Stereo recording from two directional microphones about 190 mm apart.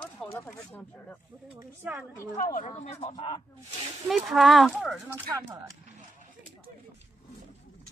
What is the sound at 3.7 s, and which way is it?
Speech, 30° right (ahead or behind).